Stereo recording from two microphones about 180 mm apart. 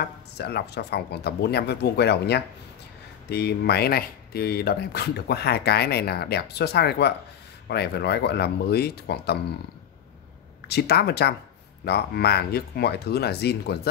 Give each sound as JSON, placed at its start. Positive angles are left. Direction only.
{"t": 0.0, "sound": "speech", "side_deg": 65}
{"t": 10.7, "sound": "speech", "side_deg": 60}